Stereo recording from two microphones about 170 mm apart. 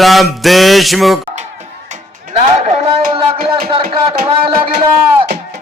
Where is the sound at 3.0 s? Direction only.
60° right (ahead or behind).